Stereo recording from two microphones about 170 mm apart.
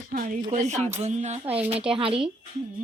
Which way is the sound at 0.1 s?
50° right (ahead or behind).